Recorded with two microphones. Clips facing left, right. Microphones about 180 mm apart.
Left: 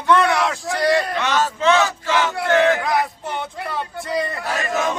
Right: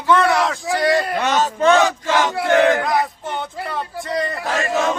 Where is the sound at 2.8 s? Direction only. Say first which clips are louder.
Right 1 dB; centre (ahead or behind).